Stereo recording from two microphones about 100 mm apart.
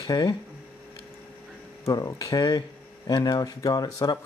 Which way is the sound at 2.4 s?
50° left (ahead or behind).